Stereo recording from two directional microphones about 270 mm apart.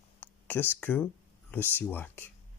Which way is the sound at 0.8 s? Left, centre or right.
Centre.